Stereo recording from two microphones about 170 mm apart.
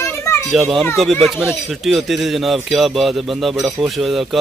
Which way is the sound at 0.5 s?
Centre (ahead or behind).